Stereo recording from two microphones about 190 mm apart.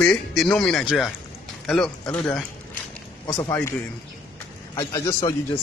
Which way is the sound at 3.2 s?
20° left (ahead or behind).